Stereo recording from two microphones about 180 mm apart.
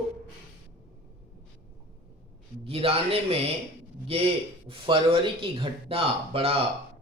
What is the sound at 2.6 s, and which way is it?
Speech, 30° right (ahead or behind).